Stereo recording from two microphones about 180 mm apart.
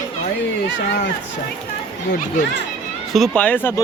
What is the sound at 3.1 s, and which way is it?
Speech, 5° left (ahead or behind).